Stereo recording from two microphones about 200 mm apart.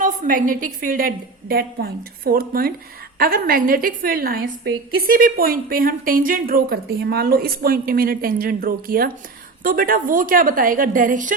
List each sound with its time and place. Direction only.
0.0 s a woman's voice: 40° right (ahead or behind)